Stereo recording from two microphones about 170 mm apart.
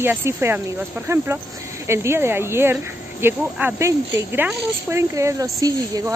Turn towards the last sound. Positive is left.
turn(degrees=-20)  # may be behind; listen again after turning